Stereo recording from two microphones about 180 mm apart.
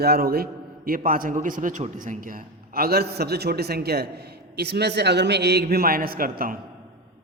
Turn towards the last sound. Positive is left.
turn(degrees=-55)  # may be behind; listen again after turning